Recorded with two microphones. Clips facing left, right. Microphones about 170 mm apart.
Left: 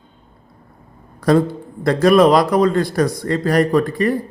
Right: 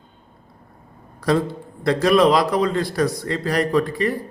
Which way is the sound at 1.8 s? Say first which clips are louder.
Left 4 dB; 50° left (ahead or behind).